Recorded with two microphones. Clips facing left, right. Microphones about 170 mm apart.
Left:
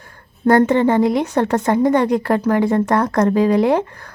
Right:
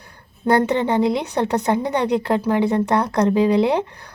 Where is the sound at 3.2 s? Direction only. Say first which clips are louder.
Even; 40° left (ahead or behind).